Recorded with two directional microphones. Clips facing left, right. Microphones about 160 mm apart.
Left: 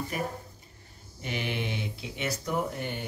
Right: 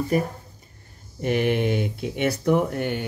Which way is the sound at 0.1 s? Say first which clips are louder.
Right 10 dB; 40° right (ahead or behind).